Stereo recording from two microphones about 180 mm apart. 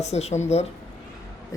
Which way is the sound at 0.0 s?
40° left (ahead or behind).